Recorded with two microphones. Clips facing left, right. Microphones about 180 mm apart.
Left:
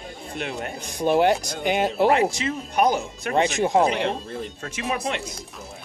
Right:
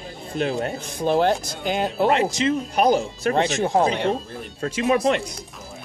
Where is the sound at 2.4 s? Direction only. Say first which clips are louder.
Right 3 dB; 30° right (ahead or behind).